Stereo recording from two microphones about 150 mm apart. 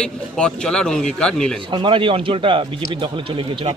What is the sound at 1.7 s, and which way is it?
A man's voice, 35° right (ahead or behind).